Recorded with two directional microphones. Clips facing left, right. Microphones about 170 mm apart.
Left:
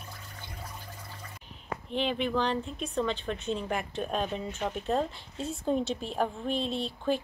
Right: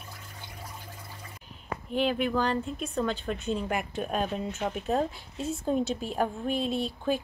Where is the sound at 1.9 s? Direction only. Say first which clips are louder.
Right 3 dB; 5° right (ahead or behind).